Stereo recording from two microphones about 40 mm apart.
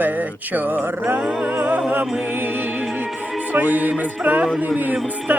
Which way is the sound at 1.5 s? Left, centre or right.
Right.